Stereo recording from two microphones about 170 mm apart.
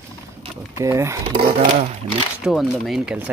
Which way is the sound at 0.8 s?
15° right (ahead or behind).